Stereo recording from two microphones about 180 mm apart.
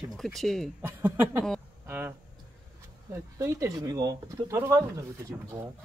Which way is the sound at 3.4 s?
20° right (ahead or behind).